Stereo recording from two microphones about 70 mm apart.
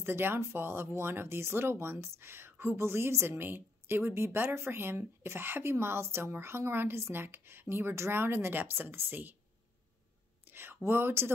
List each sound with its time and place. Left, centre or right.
0.0 s speech: right
10.4 s speech: right